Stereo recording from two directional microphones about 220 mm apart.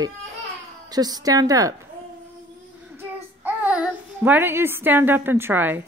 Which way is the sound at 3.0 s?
5° right (ahead or behind).